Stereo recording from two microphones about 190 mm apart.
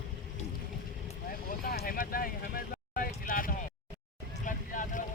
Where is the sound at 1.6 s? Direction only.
50° left (ahead or behind).